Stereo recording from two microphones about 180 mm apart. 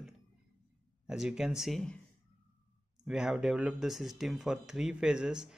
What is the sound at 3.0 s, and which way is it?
Speech, centre (ahead or behind).